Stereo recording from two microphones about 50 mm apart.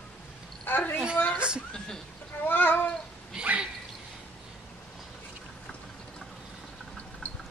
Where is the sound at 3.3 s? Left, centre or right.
Right.